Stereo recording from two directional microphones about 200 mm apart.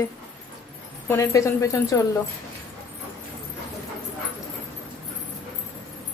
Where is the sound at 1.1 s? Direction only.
15° left (ahead or behind).